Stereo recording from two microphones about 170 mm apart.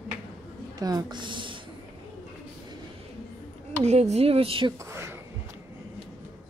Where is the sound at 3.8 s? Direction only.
40° right (ahead or behind).